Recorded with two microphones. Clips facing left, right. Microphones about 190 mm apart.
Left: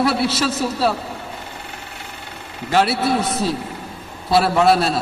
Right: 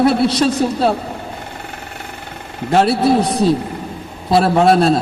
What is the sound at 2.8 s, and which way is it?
Speech, centre (ahead or behind).